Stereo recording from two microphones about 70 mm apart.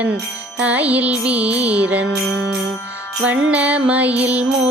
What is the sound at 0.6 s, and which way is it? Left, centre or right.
Music, right.